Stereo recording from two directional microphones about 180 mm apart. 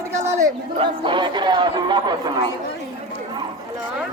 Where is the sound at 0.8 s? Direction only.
25° right (ahead or behind).